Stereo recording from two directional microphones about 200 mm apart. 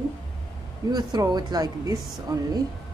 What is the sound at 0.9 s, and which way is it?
A woman's voice, 20° right (ahead or behind).